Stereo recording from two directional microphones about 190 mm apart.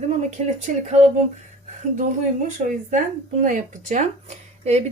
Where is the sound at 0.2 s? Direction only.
40° right (ahead or behind).